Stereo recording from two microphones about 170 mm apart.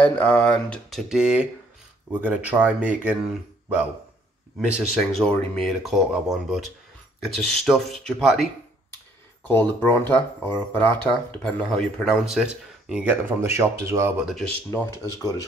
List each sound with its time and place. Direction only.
0.0 s speech: 10° left (ahead or behind)
9.5 s speech: 10° left (ahead or behind); by 14.1 s 15° right (ahead or behind)
14.7 s speech: 15° left (ahead or behind)